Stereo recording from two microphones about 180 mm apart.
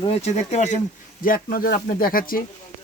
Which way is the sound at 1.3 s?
55° left (ahead or behind).